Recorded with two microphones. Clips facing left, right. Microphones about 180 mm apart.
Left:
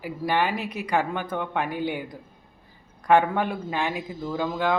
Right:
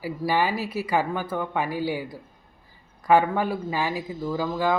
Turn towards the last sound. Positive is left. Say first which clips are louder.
# right 1 dB
turn(degrees=-5)  # may be behind; listen again after turning